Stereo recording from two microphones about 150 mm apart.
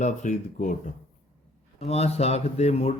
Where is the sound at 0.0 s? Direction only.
55° left (ahead or behind).